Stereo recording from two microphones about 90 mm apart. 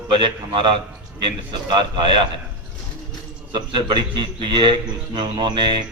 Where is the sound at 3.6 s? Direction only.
65° right (ahead or behind).